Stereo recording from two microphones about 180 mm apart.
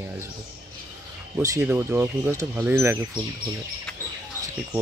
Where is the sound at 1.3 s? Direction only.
15° right (ahead or behind).